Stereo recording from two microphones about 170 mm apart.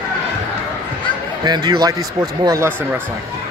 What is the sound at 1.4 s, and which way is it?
Speech, 25° right (ahead or behind).